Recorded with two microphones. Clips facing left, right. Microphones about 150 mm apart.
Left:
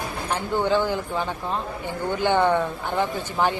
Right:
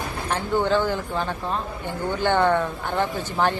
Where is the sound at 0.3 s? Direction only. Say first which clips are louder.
Right 1 dB; 15° left (ahead or behind).